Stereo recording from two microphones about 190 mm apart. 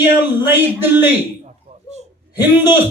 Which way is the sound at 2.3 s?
10° right (ahead or behind).